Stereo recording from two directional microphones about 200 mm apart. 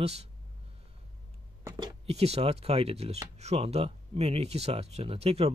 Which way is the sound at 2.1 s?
30° right (ahead or behind).